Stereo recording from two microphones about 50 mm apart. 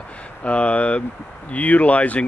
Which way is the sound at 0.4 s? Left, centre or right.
Left.